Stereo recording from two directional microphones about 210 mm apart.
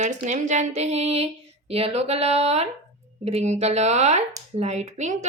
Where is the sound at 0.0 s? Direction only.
35° right (ahead or behind).